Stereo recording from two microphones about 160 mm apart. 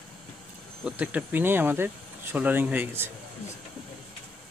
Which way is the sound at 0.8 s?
10° right (ahead or behind).